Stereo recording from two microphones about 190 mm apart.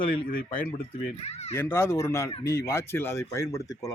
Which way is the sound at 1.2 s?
35° left (ahead or behind).